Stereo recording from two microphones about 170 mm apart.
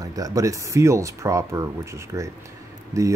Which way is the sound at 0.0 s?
20° right (ahead or behind).